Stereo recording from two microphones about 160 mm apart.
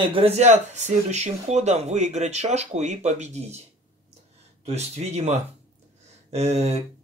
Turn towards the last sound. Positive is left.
turn(degrees=-40)  # may be behind; listen again after turning